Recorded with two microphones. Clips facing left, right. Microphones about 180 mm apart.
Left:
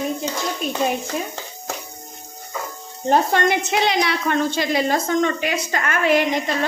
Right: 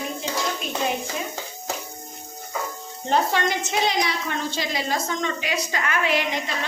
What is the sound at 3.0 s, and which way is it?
A woman's voice, 55° left (ahead or behind).